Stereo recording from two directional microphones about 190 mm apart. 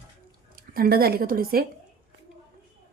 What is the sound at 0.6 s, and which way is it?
Speech, 50° right (ahead or behind).